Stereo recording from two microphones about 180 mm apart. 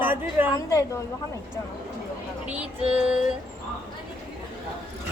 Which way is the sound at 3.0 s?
5° right (ahead or behind).